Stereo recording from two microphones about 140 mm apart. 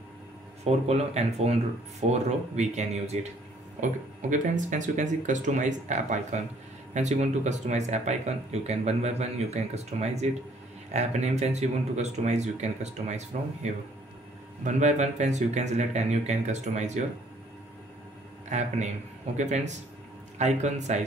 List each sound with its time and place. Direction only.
0.7 s speech: 50° right (ahead or behind)
18.5 s speech: 55° right (ahead or behind)